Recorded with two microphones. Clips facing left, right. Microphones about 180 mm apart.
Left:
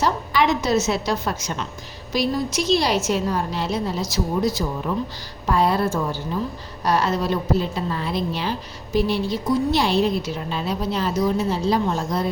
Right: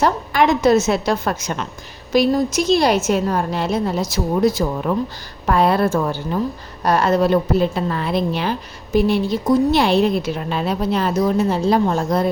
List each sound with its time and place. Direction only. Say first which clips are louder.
0.0 s a woman's voice: right 4 dB; 50° right (ahead or behind)